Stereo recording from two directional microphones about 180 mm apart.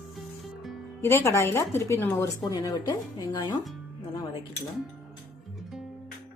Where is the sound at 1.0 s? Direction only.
15° left (ahead or behind).